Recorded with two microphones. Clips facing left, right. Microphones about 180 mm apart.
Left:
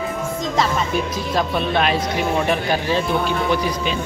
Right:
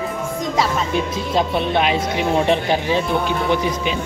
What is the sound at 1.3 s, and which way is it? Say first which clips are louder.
Speech: right 2 dB; 20° right (ahead or behind).